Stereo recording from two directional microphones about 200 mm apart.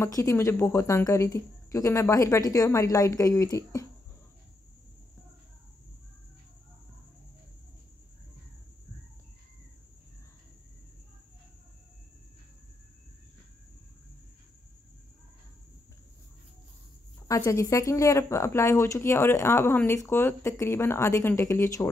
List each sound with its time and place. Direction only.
0.0 s speech: 15° left (ahead or behind)
17.3 s speech: 15° left (ahead or behind)